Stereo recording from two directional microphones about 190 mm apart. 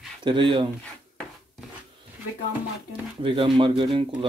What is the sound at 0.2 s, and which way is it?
Speech, 25° right (ahead or behind).